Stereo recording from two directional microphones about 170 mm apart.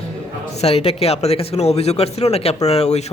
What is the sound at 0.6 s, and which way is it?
Speech, 35° left (ahead or behind).